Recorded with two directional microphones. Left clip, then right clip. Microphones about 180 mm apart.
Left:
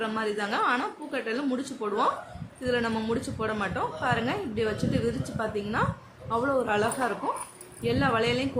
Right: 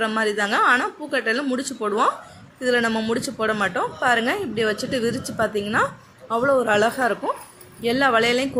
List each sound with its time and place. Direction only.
0.0 s a woman's voice: 30° right (ahead or behind)